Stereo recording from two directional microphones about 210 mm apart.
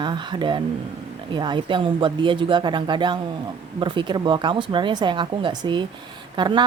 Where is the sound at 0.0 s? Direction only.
20° right (ahead or behind).